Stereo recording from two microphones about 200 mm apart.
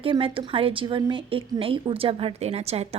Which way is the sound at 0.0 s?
25° right (ahead or behind).